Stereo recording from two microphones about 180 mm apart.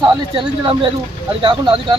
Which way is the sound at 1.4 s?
25° right (ahead or behind).